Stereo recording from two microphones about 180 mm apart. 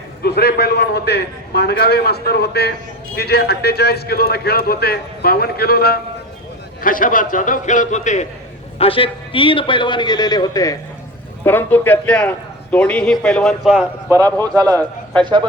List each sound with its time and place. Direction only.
0.2 s a man's voice: 60° left (ahead or behind); by 8.3 s 40° left (ahead or behind)
8.8 s a man's voice: 30° left (ahead or behind); by 13.8 s centre (ahead or behind)
14.1 s speech: 20° right (ahead or behind)